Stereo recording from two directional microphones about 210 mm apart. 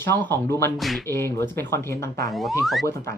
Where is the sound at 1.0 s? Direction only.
10° left (ahead or behind).